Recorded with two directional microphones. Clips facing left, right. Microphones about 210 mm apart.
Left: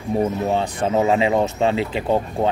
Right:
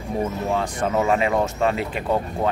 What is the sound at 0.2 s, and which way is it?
Speech, 25° left (ahead or behind).